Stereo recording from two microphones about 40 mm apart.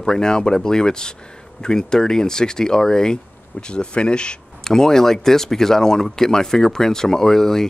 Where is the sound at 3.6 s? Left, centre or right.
Left.